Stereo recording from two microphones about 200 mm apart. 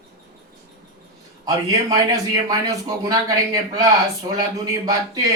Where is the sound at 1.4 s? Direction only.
20° right (ahead or behind).